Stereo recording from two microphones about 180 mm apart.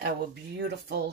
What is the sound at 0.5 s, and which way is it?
Speech, 70° right (ahead or behind).